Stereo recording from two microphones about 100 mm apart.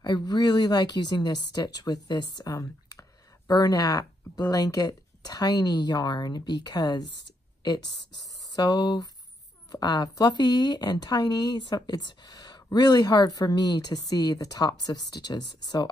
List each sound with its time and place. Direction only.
0.0 s speech: 45° left (ahead or behind)